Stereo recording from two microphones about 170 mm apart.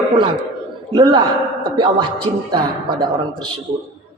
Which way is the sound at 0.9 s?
30° right (ahead or behind).